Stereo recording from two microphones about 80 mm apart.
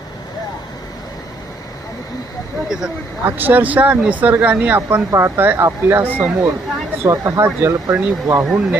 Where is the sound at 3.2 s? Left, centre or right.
Right.